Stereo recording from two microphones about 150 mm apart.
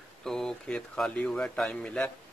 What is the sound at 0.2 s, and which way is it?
Speech, 5° left (ahead or behind).